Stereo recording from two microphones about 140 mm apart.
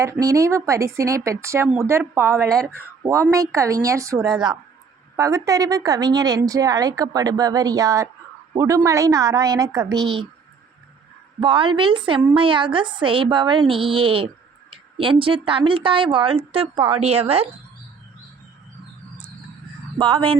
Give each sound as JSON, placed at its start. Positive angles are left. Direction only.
{"t": 0.0, "sound": "a woman's voice", "side_deg": -25}
{"t": 11.3, "sound": "a woman's voice", "side_deg": -35}
{"t": 20.0, "sound": "a woman's voice", "side_deg": -40}